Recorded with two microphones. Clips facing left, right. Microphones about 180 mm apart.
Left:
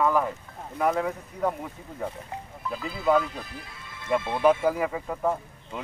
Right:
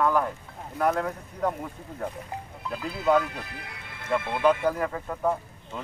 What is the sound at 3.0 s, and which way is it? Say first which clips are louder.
Speech: even; centre (ahead or behind).